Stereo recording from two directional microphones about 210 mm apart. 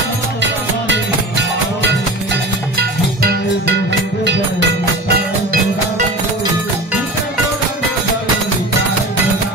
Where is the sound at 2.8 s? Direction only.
50° right (ahead or behind).